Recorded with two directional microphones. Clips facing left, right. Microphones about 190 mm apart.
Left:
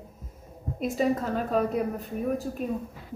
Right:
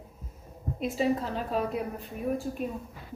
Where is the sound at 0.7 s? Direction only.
45° left (ahead or behind).